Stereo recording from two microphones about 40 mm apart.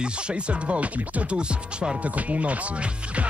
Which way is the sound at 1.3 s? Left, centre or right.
Right.